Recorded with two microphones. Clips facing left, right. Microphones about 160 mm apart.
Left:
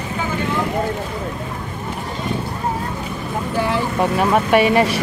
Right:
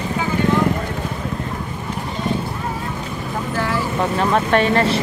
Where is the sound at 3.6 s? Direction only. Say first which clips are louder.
Left 2 dB; 15° left (ahead or behind).